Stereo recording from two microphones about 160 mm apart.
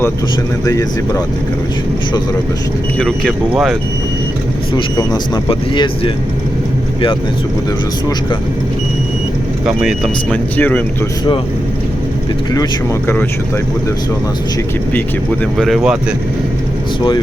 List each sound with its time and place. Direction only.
0.6 s speech: 20° left (ahead or behind)
4.7 s speech: 25° left (ahead or behind)
9.6 s speech: 5° right (ahead or behind)
10.3 s speech: 10° left (ahead or behind)
12.5 s speech: 20° left (ahead or behind)
15.5 s speech: centre (ahead or behind)